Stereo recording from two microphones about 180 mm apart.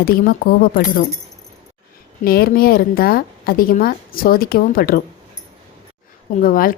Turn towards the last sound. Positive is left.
turn(degrees=50)  # may be behind; listen again after turning